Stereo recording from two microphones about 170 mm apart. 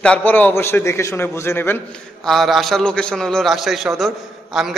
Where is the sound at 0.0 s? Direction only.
10° left (ahead or behind).